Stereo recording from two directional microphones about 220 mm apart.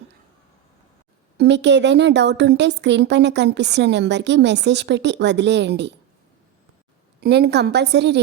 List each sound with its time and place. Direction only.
1.4 s speech: 50° right (ahead or behind)
7.2 s speech: 50° right (ahead or behind)